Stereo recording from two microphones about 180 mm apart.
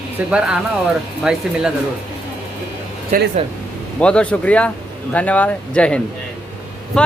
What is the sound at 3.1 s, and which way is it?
Speech, 50° right (ahead or behind).